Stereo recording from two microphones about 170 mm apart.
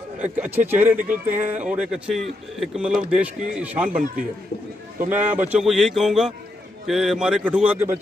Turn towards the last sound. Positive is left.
turn(degrees=-10)  # may be behind; listen again after turning